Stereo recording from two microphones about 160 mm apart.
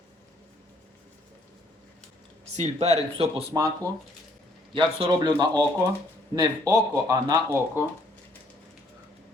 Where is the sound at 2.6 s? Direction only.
40° right (ahead or behind).